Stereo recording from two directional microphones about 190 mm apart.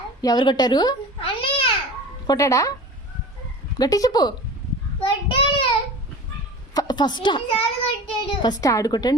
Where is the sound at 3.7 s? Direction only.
20° left (ahead or behind).